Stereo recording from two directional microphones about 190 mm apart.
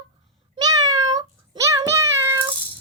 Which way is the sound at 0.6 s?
20° right (ahead or behind).